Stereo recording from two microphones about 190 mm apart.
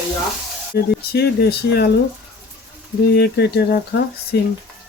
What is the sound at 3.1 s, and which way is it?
Speech, 60° left (ahead or behind).